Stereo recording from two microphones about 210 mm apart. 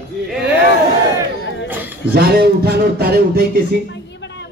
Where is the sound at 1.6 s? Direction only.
10° right (ahead or behind).